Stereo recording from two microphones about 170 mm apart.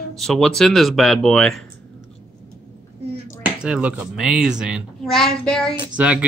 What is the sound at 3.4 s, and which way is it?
A woman's voice, 5° right (ahead or behind).